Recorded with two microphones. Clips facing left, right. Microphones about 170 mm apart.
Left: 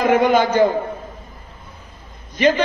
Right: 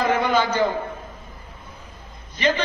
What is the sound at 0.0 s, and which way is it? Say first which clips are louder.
Speech: left 5 dB; 45° left (ahead or behind).